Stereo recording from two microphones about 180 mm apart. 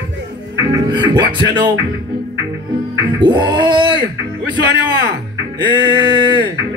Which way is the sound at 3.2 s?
25° right (ahead or behind).